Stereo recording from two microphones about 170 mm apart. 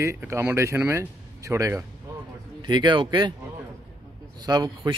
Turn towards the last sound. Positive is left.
turn(degrees=-25)  # may be behind; listen again after turning